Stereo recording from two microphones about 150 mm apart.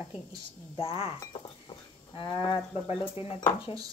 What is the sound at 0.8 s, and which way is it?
Speech, 40° left (ahead or behind).